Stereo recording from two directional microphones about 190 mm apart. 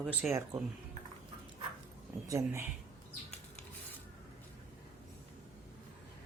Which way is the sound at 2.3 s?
15° right (ahead or behind).